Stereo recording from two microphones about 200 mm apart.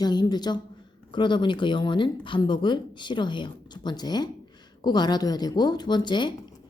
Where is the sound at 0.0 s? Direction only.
20° left (ahead or behind).